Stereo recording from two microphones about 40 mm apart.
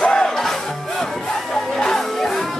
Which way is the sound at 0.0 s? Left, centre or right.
Centre.